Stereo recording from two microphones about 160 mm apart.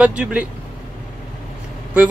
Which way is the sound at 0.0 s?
5° right (ahead or behind).